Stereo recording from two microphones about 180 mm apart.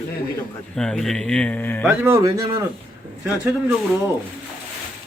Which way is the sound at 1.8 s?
10° right (ahead or behind).